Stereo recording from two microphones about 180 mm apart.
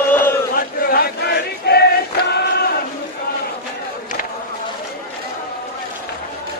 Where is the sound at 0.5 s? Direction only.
55° left (ahead or behind).